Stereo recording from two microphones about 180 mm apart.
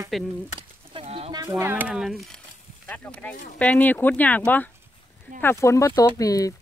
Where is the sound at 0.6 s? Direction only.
30° right (ahead or behind).